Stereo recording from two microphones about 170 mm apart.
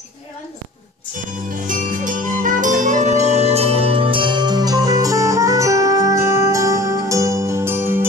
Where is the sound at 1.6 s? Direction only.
50° right (ahead or behind).